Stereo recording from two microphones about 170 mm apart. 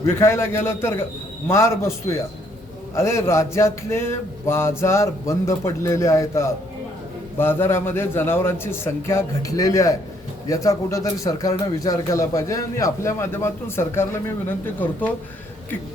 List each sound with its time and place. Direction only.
0.0 s a man's voice: 15° left (ahead or behind)